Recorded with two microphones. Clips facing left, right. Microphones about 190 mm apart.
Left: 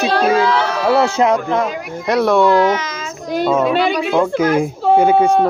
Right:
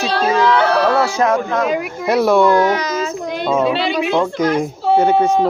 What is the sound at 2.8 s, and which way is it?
Child singing, 35° right (ahead or behind).